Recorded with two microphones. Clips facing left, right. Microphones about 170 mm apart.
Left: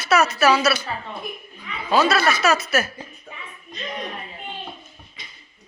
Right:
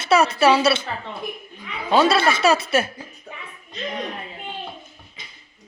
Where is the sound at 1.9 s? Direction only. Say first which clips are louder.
Right 2 dB; 30° right (ahead or behind).